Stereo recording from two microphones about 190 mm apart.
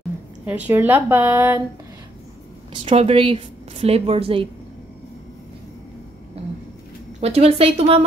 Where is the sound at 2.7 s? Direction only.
30° right (ahead or behind).